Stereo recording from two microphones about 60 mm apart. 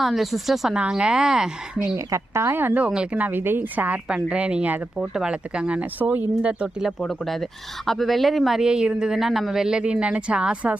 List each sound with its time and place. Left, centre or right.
0.0 s a woman's voice: centre
2.0 s a woman's voice: right
2.6 s speech: right
2.9 s speech: centre
7.0 s a woman's voice: centre; by 10.8 s right